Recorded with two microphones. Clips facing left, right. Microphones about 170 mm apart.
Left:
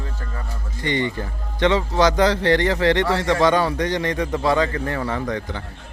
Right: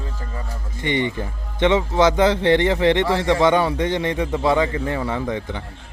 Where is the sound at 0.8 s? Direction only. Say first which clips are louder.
Right 1 dB; 20° right (ahead or behind).